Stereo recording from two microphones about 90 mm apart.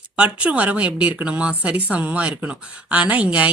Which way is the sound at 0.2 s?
15° right (ahead or behind).